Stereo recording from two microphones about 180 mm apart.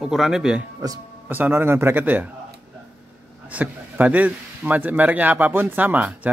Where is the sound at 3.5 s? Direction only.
10° right (ahead or behind).